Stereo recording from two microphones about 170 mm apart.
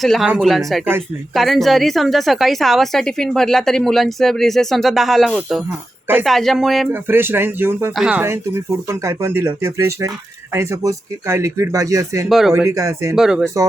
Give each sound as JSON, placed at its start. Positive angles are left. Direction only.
{"t": 0.0, "sound": "a woman's voice", "side_deg": 0}
{"t": 6.9, "sound": "speech", "side_deg": -10}
{"t": 7.9, "sound": "a woman's voice", "side_deg": -5}
{"t": 8.2, "sound": "speech", "side_deg": -15}
{"t": 12.3, "sound": "a woman's voice", "side_deg": 0}
{"t": 12.5, "sound": "speech", "side_deg": -15}
{"t": 13.1, "sound": "a woman's voice", "side_deg": -5}